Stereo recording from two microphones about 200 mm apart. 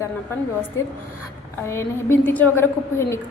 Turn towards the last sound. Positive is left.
turn(degrees=10)  # may be behind; listen again after turning